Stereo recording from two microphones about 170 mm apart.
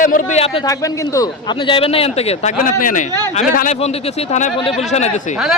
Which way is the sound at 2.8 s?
50° left (ahead or behind).